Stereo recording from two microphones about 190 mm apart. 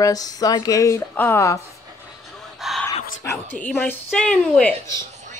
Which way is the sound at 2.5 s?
Centre (ahead or behind).